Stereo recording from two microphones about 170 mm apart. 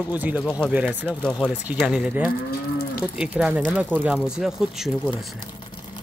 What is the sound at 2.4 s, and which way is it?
Moo, 60° left (ahead or behind).